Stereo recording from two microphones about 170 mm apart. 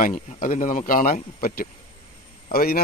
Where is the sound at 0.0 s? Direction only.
50° left (ahead or behind).